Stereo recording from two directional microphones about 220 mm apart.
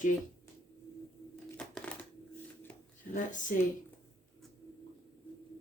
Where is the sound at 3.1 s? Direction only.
35° left (ahead or behind).